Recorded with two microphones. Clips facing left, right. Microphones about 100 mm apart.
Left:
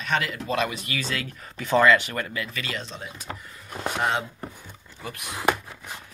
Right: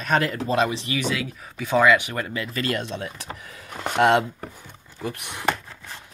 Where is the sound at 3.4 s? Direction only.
90° right.